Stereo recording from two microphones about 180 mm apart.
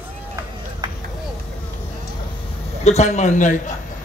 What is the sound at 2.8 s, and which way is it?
Speech, 40° left (ahead or behind).